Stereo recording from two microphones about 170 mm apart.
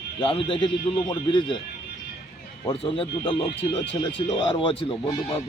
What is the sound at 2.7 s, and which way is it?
Speech, 30° left (ahead or behind).